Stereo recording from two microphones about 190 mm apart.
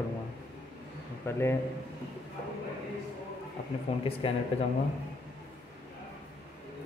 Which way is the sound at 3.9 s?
30° left (ahead or behind).